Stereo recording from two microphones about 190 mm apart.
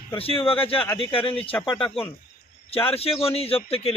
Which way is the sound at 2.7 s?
30° left (ahead or behind).